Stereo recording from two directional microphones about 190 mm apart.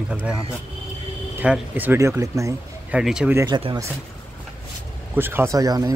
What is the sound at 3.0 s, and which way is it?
Speech, 5° right (ahead or behind).